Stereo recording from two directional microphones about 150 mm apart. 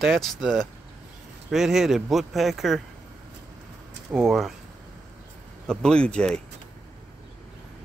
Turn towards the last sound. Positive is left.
turn(degrees=5)  # may be behind; listen again after turning